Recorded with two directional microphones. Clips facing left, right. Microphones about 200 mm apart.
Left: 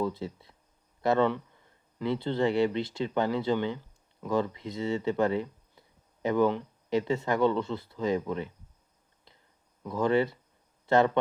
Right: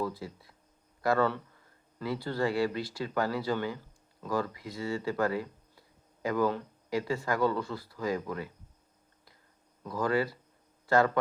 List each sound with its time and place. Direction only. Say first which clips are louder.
0.0 s speech: left 3 dB; 25° left (ahead or behind)
9.8 s speech: left 4 dB; 25° left (ahead or behind)